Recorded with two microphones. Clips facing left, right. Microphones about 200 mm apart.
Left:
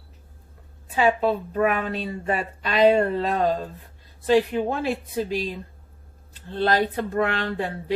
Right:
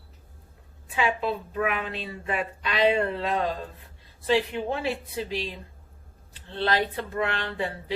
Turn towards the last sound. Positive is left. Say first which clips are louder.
# left 4 dB
turn(degrees=45)  # may be behind; listen again after turning